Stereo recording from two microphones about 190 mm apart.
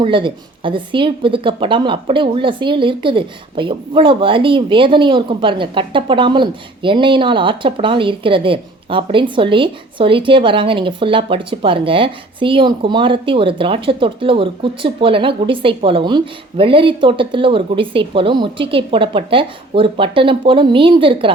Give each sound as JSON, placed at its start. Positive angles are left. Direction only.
{"t": 0.0, "sound": "speech", "side_deg": -25}